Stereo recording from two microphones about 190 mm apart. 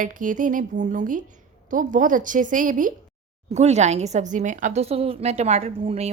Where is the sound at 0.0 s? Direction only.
45° right (ahead or behind).